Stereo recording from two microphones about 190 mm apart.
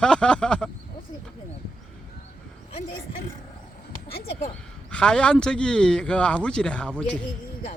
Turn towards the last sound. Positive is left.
turn(degrees=5)  # may be behind; listen again after turning